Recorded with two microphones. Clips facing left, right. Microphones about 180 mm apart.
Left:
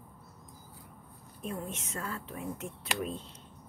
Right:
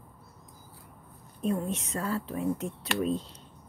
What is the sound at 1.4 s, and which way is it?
Speech, 35° right (ahead or behind).